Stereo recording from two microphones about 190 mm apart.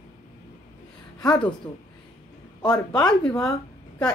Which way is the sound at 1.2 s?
20° left (ahead or behind).